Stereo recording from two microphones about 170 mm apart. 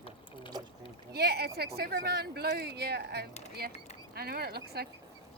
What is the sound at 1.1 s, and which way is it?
Speech, 70° right (ahead or behind).